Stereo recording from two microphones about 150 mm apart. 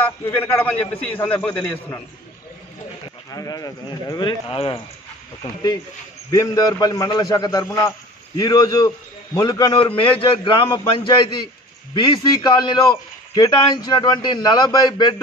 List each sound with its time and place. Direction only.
0.0 s a man's voice: 15° left (ahead or behind)
3.3 s a man's voice: 25° left (ahead or behind)